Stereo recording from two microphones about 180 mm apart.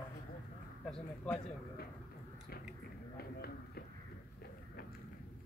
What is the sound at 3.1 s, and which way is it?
Run, 60° left (ahead or behind).